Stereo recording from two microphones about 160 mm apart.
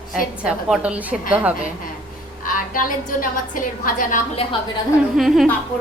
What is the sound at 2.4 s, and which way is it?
A woman's voice, 60° left (ahead or behind).